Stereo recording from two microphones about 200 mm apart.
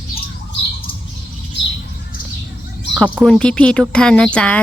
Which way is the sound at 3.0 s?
5° left (ahead or behind).